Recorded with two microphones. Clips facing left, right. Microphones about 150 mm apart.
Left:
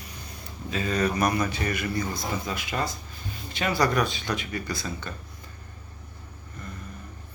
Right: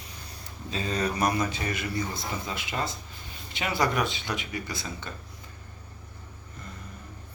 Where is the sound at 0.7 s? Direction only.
30° right (ahead or behind).